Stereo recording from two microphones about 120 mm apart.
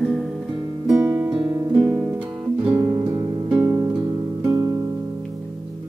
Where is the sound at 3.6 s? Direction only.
25° right (ahead or behind).